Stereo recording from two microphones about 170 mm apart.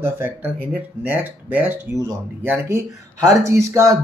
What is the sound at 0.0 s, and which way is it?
Speech, 15° right (ahead or behind).